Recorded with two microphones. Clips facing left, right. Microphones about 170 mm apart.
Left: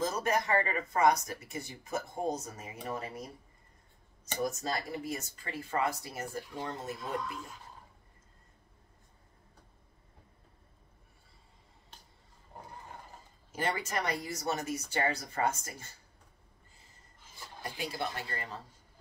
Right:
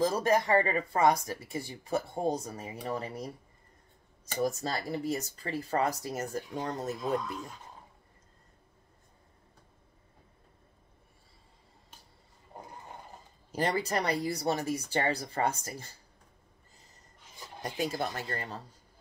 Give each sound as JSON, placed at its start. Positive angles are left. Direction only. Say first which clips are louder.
{"t": 0.0, "sound": "speech", "louder": "right 5 dB", "side_deg": -30}
{"t": 4.5, "sound": "speech", "louder": "right 2 dB", "side_deg": -35}
{"t": 13.5, "sound": "speech", "louder": "right 4 dB", "side_deg": -35}
{"t": 17.4, "sound": "a sound", "louder": "right 4 dB", "side_deg": -20}
{"t": 17.7, "sound": "speech", "louder": "right 4 dB", "side_deg": -45}